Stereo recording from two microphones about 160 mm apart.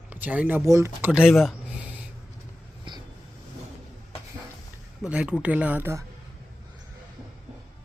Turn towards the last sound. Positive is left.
turn(degrees=-15)  # may be behind; listen again after turning